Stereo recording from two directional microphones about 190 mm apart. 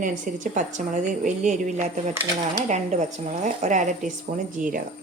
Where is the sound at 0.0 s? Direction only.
40° right (ahead or behind).